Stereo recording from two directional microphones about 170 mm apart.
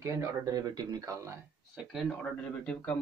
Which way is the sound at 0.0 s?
20° right (ahead or behind).